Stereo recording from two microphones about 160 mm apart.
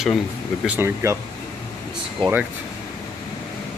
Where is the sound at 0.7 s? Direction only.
15° right (ahead or behind).